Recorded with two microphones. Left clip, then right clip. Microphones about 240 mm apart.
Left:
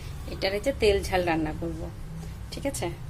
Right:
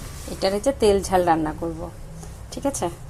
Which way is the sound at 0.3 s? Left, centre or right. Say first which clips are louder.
Right 5 dB; centre.